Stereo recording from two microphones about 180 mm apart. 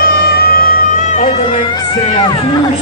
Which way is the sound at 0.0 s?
55° left (ahead or behind).